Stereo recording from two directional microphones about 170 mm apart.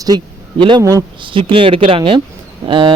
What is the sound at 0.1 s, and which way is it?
Speech, 25° right (ahead or behind).